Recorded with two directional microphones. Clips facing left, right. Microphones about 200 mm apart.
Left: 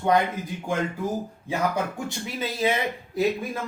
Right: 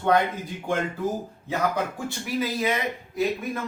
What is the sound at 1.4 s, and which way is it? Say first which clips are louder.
Speech: even; 10° left (ahead or behind).